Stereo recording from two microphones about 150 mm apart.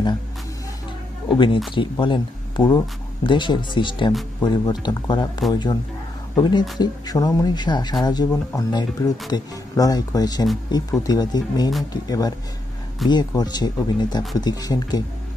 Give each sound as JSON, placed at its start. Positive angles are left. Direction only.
{"t": 1.3, "sound": "speech", "side_deg": 35}